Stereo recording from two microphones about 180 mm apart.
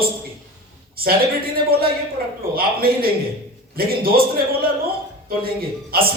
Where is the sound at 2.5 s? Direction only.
55° right (ahead or behind).